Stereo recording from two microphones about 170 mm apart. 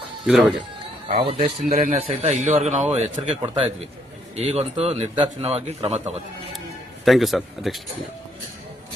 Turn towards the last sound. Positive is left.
turn(degrees=0)  # may be behind; listen again after turning